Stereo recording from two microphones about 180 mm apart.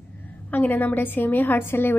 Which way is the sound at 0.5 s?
10° left (ahead or behind).